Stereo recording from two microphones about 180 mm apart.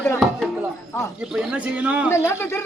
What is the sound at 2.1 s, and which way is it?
Speech, 15° left (ahead or behind).